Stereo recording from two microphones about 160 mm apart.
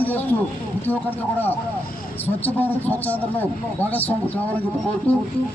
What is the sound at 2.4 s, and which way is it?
Speech, 10° left (ahead or behind).